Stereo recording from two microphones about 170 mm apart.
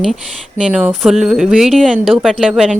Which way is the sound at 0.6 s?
10° right (ahead or behind).